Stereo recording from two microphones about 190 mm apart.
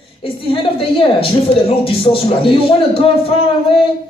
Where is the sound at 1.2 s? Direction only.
30° left (ahead or behind).